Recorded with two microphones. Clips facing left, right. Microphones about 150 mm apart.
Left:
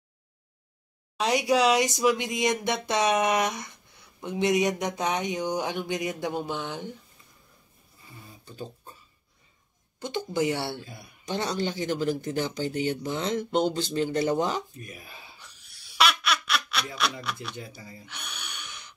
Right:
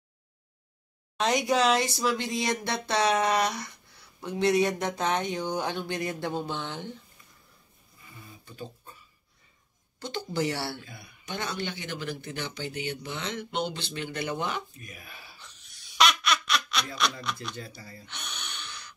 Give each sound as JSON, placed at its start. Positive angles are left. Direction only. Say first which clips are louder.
{"t": 1.1, "sound": "speech", "louder": "left 2 dB", "side_deg": 10}
{"t": 8.5, "sound": "a sound", "louder": "left 2 dB", "side_deg": 35}
{"t": 9.9, "sound": "speech", "louder": "left 3 dB", "side_deg": 20}
{"t": 10.9, "sound": "speech", "louder": "left 5 dB", "side_deg": 35}
{"t": 15.4, "sound": "a sound", "louder": "even", "side_deg": 5}
{"t": 17.2, "sound": "speech", "louder": "even", "side_deg": 5}
{"t": 18.0, "sound": "gasp", "louder": "right 2 dB", "side_deg": 5}